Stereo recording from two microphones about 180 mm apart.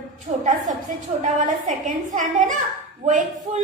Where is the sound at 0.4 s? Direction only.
45° right (ahead or behind).